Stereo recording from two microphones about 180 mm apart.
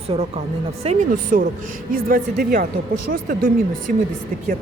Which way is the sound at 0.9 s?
45° right (ahead or behind).